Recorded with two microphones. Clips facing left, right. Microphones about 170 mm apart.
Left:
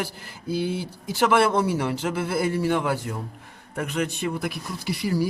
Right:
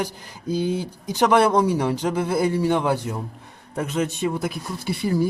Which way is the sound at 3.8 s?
20° right (ahead or behind).